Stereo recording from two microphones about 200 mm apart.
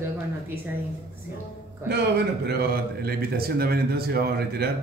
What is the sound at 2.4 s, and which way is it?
A man's voice, 50° right (ahead or behind).